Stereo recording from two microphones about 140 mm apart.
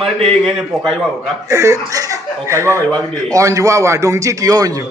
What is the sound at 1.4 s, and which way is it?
Speech, 25° right (ahead or behind).